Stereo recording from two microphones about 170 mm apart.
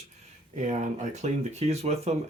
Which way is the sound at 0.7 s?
45° right (ahead or behind).